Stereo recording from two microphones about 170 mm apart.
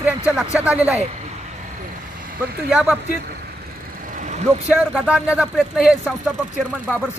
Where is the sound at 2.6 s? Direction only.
5° right (ahead or behind).